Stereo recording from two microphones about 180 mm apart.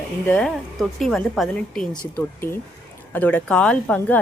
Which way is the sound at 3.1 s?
10° left (ahead or behind).